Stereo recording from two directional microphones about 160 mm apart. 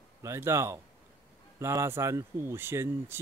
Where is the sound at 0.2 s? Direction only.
15° right (ahead or behind).